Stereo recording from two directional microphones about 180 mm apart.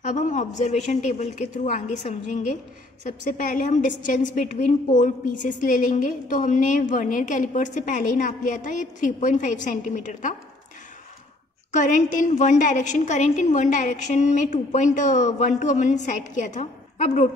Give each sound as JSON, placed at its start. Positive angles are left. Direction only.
{"t": 0.0, "sound": "a woman's voice", "side_deg": 45}
{"t": 11.7, "sound": "a woman's voice", "side_deg": 45}